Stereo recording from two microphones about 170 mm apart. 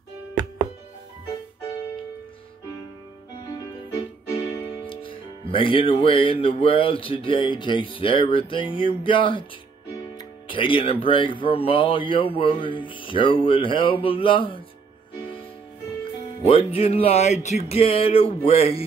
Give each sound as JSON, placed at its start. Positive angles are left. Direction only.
{"t": 0.3, "sound": "music", "side_deg": -25}
{"t": 4.8, "sound": "speech", "side_deg": 30}
{"t": 16.4, "sound": "speech", "side_deg": 35}